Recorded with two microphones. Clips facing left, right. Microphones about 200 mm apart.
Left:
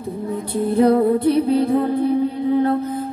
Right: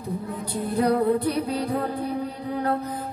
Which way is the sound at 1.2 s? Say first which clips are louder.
Left 9 dB; 25° left (ahead or behind).